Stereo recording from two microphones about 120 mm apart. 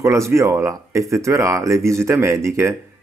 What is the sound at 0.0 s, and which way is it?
Speech, 25° right (ahead or behind).